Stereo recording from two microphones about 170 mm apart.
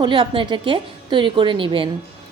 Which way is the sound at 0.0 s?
25° right (ahead or behind).